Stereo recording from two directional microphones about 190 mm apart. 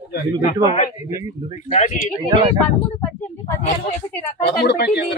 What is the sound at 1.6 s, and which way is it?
Speech, 40° left (ahead or behind).